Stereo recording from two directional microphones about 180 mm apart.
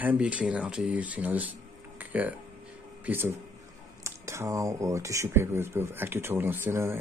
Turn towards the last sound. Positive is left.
turn(degrees=-15)  # may be behind; listen again after turning